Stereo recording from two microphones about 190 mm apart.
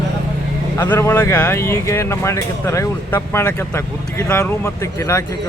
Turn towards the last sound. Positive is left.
turn(degrees=15)  # may be behind; listen again after turning